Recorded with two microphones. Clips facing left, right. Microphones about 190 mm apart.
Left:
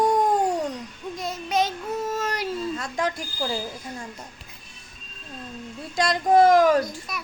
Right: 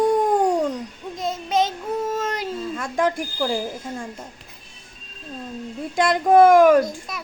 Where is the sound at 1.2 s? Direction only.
25° right (ahead or behind).